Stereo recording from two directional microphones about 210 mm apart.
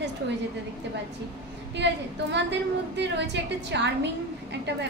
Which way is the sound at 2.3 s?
55° right (ahead or behind).